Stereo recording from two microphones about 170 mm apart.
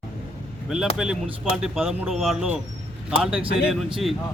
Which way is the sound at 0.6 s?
5° right (ahead or behind).